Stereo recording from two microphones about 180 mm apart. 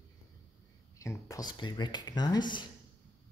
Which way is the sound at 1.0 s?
15° left (ahead or behind).